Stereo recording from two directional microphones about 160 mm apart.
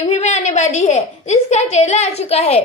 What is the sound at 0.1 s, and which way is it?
A woman's voice, 45° left (ahead or behind).